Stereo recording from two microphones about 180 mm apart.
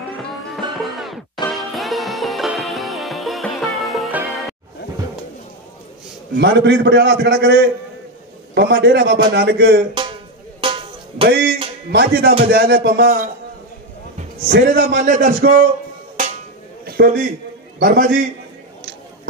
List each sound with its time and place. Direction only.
0.7 s music: centre (ahead or behind)
6.3 s a man's voice: 70° right (ahead or behind)
10.6 s music: 30° right (ahead or behind)
11.2 s speech: 60° right (ahead or behind)
14.5 s a man's voice: 70° right (ahead or behind)
15.0 s speech: 45° right (ahead or behind)
16.8 s a sound: 60° right (ahead or behind)
17.7 s speech: 55° right (ahead or behind)